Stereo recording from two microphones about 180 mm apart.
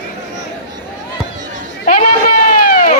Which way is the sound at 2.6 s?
50° left (ahead or behind).